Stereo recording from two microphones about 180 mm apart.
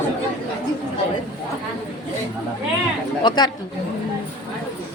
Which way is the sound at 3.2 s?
25° left (ahead or behind).